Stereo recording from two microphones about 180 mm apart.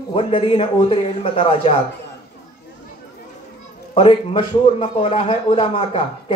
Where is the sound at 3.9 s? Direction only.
30° left (ahead or behind).